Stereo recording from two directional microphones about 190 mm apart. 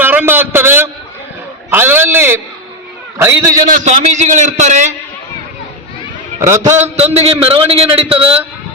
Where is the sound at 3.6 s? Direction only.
40° right (ahead or behind).